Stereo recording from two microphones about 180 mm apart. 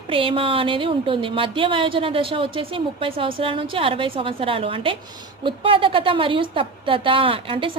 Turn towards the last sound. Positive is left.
turn(degrees=-30)  # may be behind; listen again after turning